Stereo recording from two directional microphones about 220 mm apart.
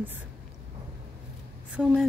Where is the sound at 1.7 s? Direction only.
5° right (ahead or behind).